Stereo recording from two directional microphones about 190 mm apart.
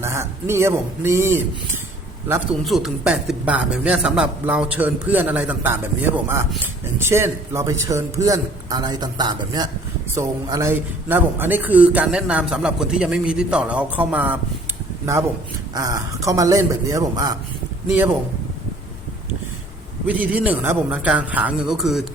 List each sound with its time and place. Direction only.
0.0 s a man's voice: 15° right (ahead or behind)
2.6 s a man's voice: centre (ahead or behind)
15.7 s a man's voice: 20° right (ahead or behind)
20.1 s a man's voice: 10° right (ahead or behind)